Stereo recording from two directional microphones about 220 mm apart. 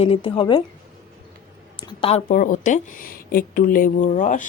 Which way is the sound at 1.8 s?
25° left (ahead or behind).